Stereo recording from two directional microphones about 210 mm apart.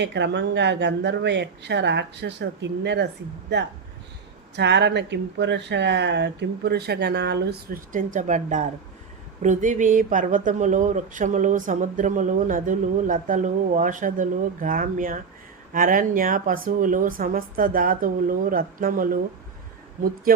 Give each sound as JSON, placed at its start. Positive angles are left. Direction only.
{"t": 0.0, "sound": "speech", "side_deg": -55}
{"t": 4.5, "sound": "speech", "side_deg": -55}
{"t": 7.9, "sound": "speech", "side_deg": -35}